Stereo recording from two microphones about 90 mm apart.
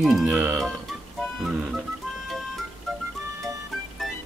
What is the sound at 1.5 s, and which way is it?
Music, 15° right (ahead or behind).